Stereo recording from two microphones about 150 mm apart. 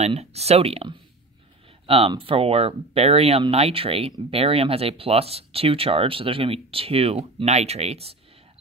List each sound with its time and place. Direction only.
0.0 s speech: 45° right (ahead or behind)